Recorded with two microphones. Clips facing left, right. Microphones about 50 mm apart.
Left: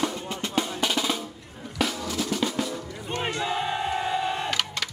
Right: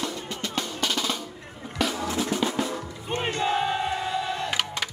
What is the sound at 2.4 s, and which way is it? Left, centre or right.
Music, centre.